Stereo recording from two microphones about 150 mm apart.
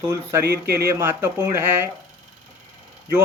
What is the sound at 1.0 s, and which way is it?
Speech, 15° right (ahead or behind).